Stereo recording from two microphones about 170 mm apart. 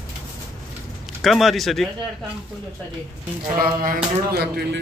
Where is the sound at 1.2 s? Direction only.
Centre (ahead or behind).